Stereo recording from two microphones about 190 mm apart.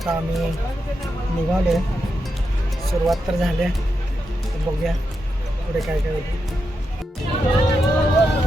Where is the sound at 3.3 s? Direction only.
Centre (ahead or behind).